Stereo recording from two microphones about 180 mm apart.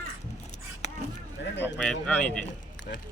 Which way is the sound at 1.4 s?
75° left (ahead or behind).